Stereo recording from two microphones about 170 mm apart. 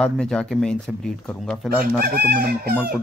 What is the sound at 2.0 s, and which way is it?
Speech, 60° right (ahead or behind).